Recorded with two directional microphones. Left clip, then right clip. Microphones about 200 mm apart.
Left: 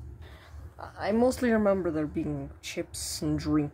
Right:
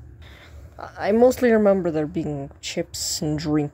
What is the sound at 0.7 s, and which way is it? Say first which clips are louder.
Speech: right 9 dB; 25° right (ahead or behind).